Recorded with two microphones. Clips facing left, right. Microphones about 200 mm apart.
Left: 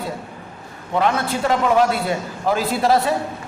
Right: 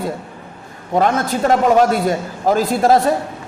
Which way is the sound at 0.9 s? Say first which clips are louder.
Right 3 dB; 45° right (ahead or behind).